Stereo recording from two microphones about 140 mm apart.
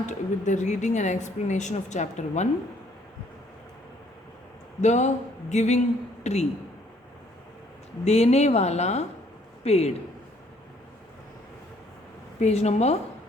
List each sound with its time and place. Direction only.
0.0 s a woman's voice: 60° left (ahead or behind)
4.8 s a woman's voice: 55° left (ahead or behind)
8.0 s speech: 50° left (ahead or behind)
12.4 s speech: 50° left (ahead or behind)